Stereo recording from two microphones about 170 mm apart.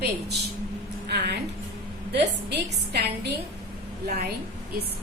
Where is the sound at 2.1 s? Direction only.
80° right.